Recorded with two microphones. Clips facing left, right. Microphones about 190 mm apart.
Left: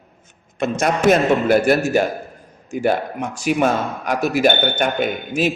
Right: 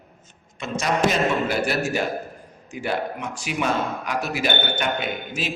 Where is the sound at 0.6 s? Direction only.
55° left (ahead or behind).